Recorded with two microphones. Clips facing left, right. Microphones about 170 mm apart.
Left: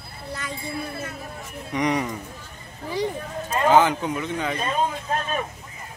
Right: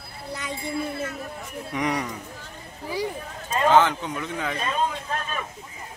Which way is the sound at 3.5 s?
10° left (ahead or behind).